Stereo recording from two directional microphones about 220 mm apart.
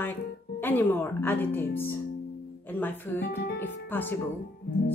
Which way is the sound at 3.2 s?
50° left (ahead or behind).